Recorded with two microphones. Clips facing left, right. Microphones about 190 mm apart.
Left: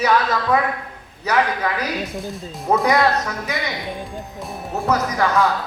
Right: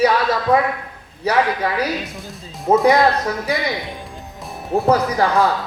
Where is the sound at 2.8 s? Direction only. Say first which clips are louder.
Right 3 dB; 30° right (ahead or behind).